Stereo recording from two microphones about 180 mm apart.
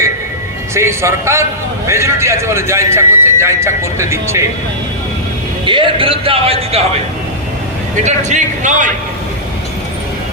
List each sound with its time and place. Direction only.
0.7 s a man's voice: 15° right (ahead or behind)
5.6 s speech: 30° right (ahead or behind)
8.0 s a man's voice: 40° right (ahead or behind)